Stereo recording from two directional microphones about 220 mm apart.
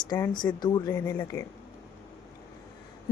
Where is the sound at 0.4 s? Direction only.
20° left (ahead or behind).